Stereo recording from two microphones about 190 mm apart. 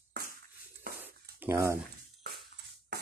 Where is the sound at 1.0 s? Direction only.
10° right (ahead or behind).